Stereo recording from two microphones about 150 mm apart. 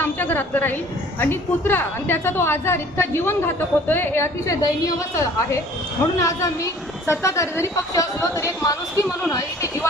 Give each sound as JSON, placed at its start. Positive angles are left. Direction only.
{"t": 0.0, "sound": "a woman's voice", "side_deg": 10}